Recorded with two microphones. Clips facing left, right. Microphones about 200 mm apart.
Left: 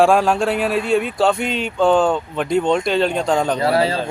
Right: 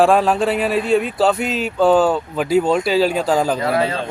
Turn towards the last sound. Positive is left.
turn(degrees=30)  # may be behind; listen again after turning